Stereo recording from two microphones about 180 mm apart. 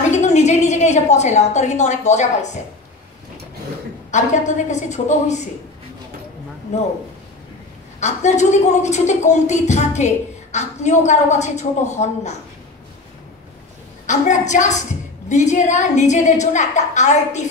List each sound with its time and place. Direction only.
0.1 s a woman's voice: 40° left (ahead or behind)
4.1 s a woman's voice: 40° left (ahead or behind)
6.7 s a woman's voice: 40° left (ahead or behind)
8.0 s a woman's voice: 40° left (ahead or behind)
14.0 s a woman's voice: 40° left (ahead or behind)